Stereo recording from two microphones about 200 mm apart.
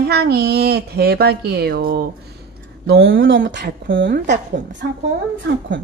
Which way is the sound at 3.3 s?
65° right (ahead or behind).